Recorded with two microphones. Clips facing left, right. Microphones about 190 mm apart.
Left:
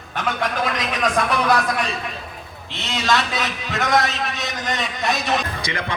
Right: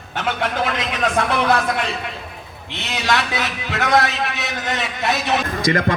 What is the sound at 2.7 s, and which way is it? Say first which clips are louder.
A man's voice: even; 20° right (ahead or behind).